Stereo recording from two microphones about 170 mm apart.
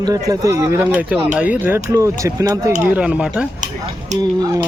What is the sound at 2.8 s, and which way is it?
Speech, 10° right (ahead or behind).